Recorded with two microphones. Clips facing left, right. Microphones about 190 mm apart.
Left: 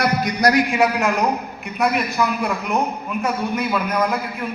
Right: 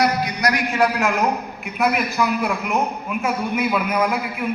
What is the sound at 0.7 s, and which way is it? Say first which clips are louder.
A man's voice: left 1 dB; 5° left (ahead or behind).